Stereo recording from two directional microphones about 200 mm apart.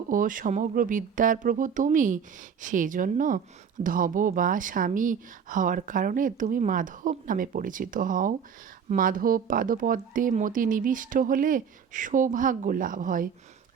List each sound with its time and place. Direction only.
0.1 s speech: 40° right (ahead or behind)